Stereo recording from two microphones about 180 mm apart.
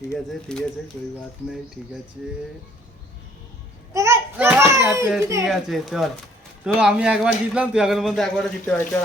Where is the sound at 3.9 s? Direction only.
15° right (ahead or behind).